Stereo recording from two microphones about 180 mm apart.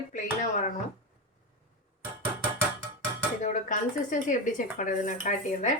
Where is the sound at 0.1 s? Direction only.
45° left (ahead or behind).